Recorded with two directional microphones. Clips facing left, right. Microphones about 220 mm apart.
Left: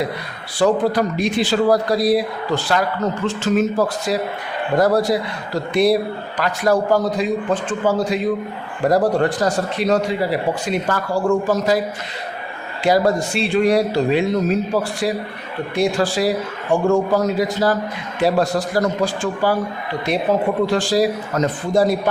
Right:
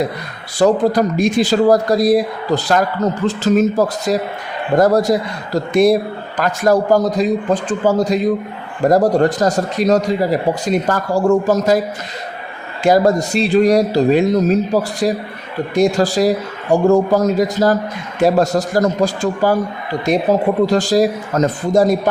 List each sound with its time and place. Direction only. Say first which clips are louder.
0.6 s a man's voice: right 3 dB; 45° right (ahead or behind)
12.8 s a man's voice: right 4 dB; 45° right (ahead or behind)